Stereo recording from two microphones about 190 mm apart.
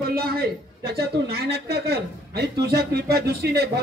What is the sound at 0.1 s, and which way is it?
A man's voice, 55° right (ahead or behind).